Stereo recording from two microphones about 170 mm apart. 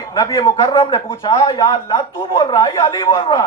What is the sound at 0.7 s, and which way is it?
Speech, 30° left (ahead or behind).